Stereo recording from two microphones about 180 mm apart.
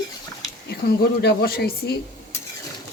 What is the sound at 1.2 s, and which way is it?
Speech, 60° left (ahead or behind).